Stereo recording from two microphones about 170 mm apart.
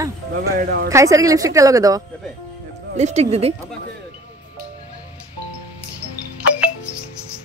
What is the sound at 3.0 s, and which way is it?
Speech, 40° right (ahead or behind).